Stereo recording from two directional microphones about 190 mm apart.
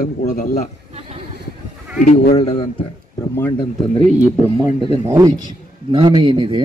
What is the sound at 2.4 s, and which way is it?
Speech, 30° left (ahead or behind).